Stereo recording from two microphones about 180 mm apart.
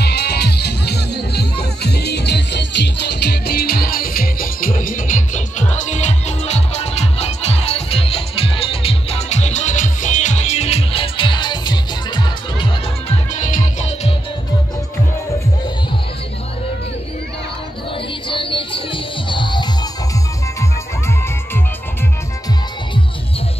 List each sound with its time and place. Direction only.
0.0 s music: 65° left (ahead or behind); by 12.6 s 25° left (ahead or behind)
13.1 s music: 45° left (ahead or behind)
18.3 s music: 30° left (ahead or behind)